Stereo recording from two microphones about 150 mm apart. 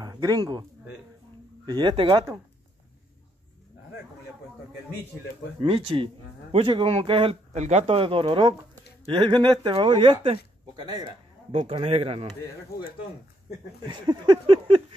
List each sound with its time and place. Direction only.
0.0 s speech: 25° right (ahead or behind)
1.7 s speech: 30° right (ahead or behind)
5.6 s speech: 35° right (ahead or behind)
7.5 s speech: 50° right (ahead or behind)
13.8 s a sound: 30° right (ahead or behind)